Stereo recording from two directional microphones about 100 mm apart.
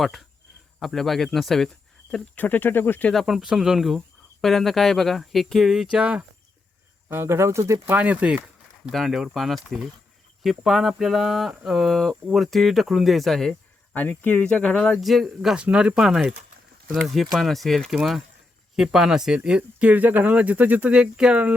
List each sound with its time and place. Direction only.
0.0 s speech: centre (ahead or behind)
2.3 s speech: 20° left (ahead or behind)
3.1 s speech: centre (ahead or behind)
7.1 s speech: 25° right (ahead or behind)
7.9 s speech: 15° right (ahead or behind)
8.9 s speech: centre (ahead or behind)
13.9 s speech: 20° left (ahead or behind)
14.9 s speech: centre (ahead or behind)